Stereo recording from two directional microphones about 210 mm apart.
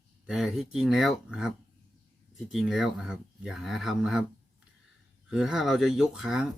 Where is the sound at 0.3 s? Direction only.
Centre (ahead or behind).